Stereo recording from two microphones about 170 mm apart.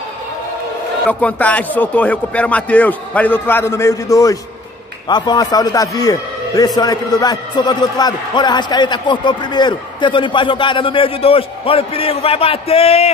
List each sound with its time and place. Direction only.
1.0 s a man's voice: 10° left (ahead or behind); by 13.1 s 35° left (ahead or behind)